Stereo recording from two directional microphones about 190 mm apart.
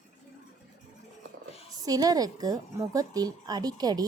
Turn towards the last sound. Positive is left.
turn(degrees=-20)  # may be behind; listen again after turning